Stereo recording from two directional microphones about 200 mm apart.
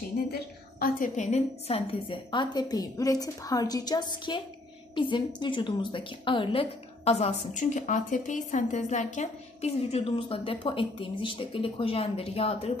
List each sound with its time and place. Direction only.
0.3 s a woman's voice: 45° left (ahead or behind); by 12.7 s 30° left (ahead or behind)